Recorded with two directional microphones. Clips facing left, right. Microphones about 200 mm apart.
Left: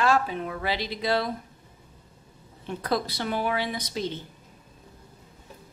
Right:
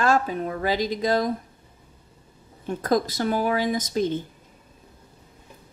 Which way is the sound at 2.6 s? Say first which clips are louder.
Right 5 dB; 45° right (ahead or behind).